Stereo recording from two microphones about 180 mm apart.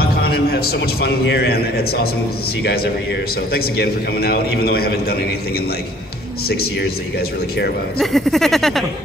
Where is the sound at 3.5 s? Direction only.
60° left (ahead or behind).